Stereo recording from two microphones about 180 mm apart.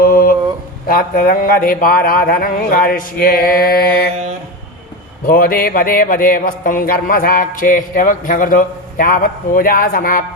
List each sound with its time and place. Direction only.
0.0 s mantra: 50° left (ahead or behind)
0.9 s speech: 50° left (ahead or behind)
5.2 s speech: 55° left (ahead or behind)